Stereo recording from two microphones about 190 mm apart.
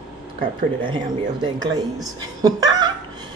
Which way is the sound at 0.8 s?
25° right (ahead or behind).